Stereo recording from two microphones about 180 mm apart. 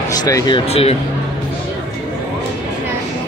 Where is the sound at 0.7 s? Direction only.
35° left (ahead or behind).